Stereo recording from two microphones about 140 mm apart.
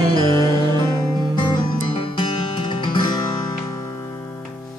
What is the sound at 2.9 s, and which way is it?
Music, 35° left (ahead or behind).